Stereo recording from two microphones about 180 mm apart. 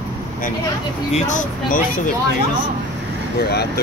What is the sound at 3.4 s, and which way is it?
Speech, 60° left (ahead or behind).